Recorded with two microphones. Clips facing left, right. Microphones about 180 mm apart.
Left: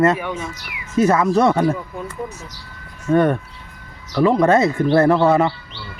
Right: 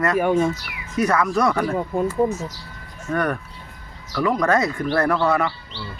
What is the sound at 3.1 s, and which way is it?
Speech, 25° left (ahead or behind).